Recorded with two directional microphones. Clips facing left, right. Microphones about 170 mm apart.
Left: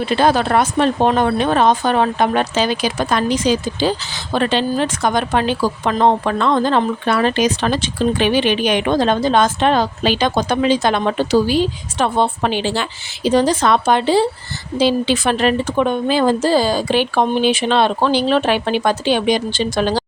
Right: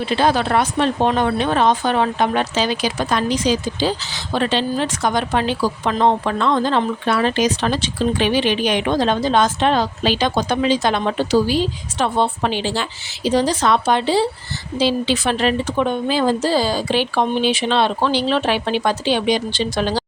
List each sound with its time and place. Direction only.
0.1 s speech: 50° left (ahead or behind)